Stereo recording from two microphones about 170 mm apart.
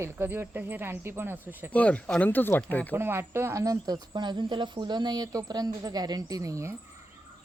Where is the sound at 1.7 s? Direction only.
10° left (ahead or behind).